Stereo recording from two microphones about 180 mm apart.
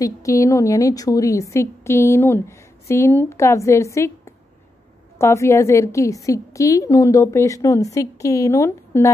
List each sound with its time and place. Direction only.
0.0 s a woman's voice: 15° left (ahead or behind)
5.2 s a woman's voice: 15° left (ahead or behind)